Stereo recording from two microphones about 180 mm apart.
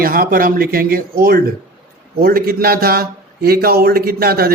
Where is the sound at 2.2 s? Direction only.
55° right (ahead or behind).